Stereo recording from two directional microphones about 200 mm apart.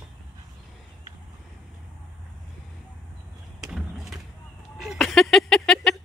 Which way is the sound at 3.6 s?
Centre (ahead or behind).